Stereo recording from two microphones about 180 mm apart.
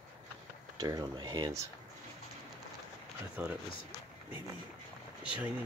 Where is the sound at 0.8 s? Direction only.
20° right (ahead or behind).